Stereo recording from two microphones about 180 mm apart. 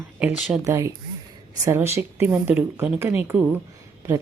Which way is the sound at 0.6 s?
15° right (ahead or behind).